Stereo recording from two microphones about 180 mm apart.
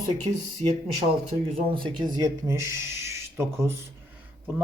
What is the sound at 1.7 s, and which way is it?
A man's voice, 25° right (ahead or behind).